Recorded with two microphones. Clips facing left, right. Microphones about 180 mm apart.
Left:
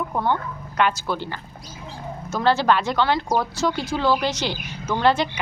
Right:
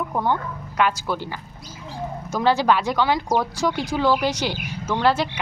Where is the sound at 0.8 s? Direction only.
10° right (ahead or behind).